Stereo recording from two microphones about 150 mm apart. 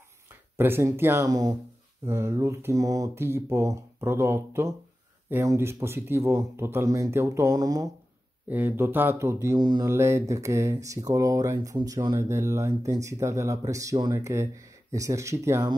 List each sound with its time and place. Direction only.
0.3 s speech: 15° right (ahead or behind)
8.5 s speech: 10° right (ahead or behind)